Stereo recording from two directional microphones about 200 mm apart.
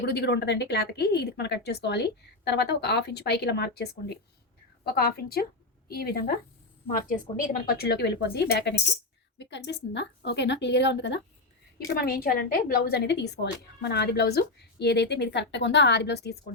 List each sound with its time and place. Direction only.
0.0 s a woman's voice: 55° left (ahead or behind)
11.9 s a woman's voice: 50° left (ahead or behind)